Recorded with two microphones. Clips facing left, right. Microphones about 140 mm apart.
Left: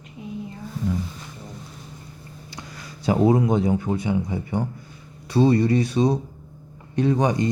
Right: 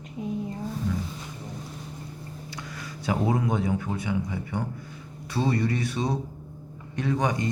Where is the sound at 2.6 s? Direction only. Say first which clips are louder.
Left 1 dB; 25° left (ahead or behind).